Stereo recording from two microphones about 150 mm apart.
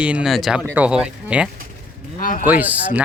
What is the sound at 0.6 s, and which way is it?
Speech, 10° right (ahead or behind).